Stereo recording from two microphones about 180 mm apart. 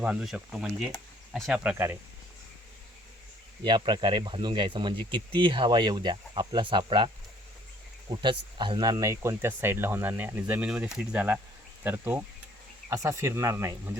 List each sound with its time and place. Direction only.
0.0 s speech: 5° right (ahead or behind)
3.6 s speech: 25° right (ahead or behind)
8.1 s speech: 25° right (ahead or behind)